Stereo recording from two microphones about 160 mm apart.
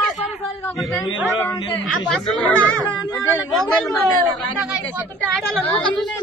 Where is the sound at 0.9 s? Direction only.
20° left (ahead or behind).